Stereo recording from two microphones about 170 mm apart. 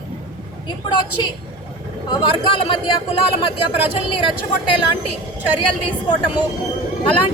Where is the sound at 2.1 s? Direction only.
30° left (ahead or behind).